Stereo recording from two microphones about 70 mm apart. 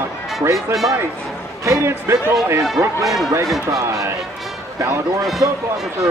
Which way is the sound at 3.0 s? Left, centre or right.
Centre.